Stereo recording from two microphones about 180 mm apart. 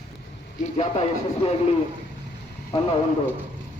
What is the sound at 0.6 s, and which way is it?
A man's voice, 35° left (ahead or behind).